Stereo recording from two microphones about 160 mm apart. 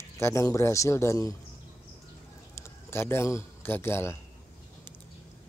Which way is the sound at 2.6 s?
15° left (ahead or behind).